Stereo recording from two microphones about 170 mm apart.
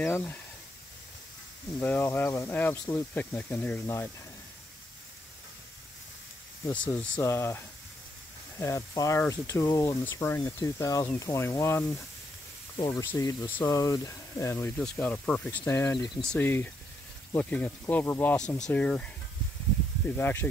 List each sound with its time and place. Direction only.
0.0 s speech: 10° left (ahead or behind)
1.8 s speech: 10° left (ahead or behind)
6.7 s speech: 10° left (ahead or behind)
20.1 s speech: 10° left (ahead or behind)